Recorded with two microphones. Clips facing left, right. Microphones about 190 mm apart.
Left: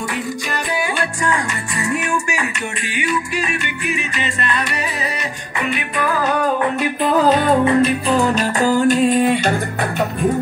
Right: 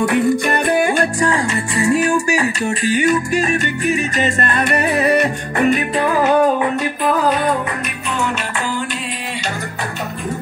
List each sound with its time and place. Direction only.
0.0 s music: 55° right (ahead or behind)
1.2 s speech: 30° right (ahead or behind); by 5.9 s 45° right (ahead or behind)
5.9 s music: 20° right (ahead or behind)
7.2 s music: 30° left (ahead or behind); by 9.4 s 50° left (ahead or behind)